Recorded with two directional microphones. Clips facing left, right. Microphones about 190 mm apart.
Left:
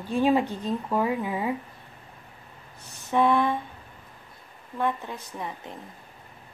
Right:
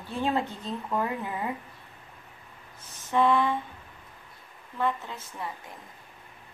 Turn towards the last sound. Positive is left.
turn(degrees=20)  # may be behind; listen again after turning